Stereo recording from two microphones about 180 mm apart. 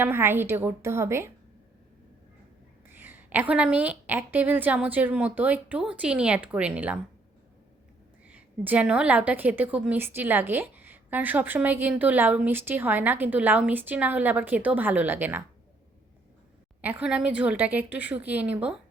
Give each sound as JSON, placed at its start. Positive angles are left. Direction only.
{"t": 0.0, "sound": "a woman's voice", "side_deg": -10}
{"t": 3.0, "sound": "a woman's voice", "side_deg": -10}
{"t": 8.3, "sound": "a woman's voice", "side_deg": -10}
{"t": 16.8, "sound": "a woman's voice", "side_deg": -10}